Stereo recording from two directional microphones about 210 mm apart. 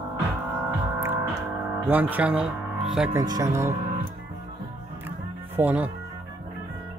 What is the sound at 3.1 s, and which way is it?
Speech, 15° right (ahead or behind).